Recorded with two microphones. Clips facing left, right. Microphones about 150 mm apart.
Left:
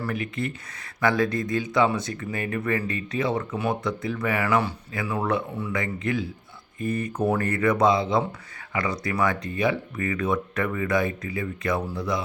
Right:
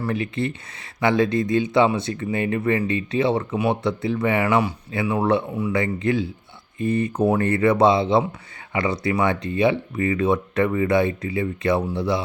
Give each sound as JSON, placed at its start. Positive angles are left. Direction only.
{"t": 0.0, "sound": "speech", "side_deg": -30}